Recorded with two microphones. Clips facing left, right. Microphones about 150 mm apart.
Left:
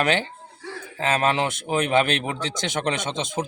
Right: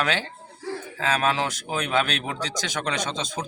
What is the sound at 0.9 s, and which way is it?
A man's voice, 25° left (ahead or behind).